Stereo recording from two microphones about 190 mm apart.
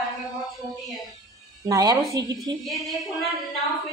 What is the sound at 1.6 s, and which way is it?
Speech, 15° right (ahead or behind).